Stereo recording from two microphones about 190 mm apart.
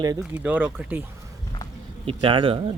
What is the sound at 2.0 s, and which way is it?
Speech, 25° right (ahead or behind).